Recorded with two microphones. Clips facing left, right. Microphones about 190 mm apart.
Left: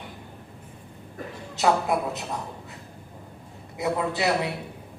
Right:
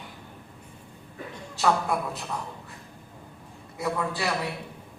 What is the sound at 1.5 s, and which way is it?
Speech, 20° left (ahead or behind).